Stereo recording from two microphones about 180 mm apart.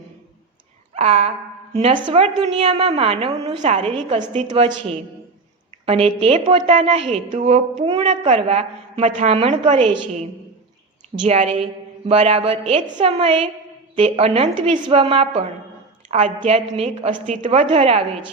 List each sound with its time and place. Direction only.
0.9 s a woman's voice: 35° right (ahead or behind)
11.3 s a woman's voice: 35° right (ahead or behind)